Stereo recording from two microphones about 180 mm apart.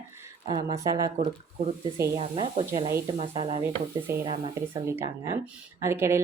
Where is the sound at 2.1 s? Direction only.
30° right (ahead or behind).